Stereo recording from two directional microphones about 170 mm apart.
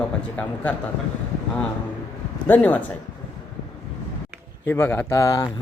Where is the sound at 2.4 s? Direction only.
10° left (ahead or behind).